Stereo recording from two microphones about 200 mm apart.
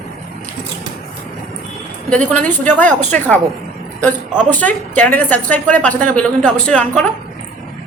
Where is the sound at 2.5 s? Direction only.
10° left (ahead or behind).